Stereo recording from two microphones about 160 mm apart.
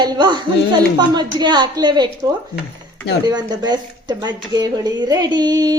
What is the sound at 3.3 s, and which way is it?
Speech, 25° right (ahead or behind).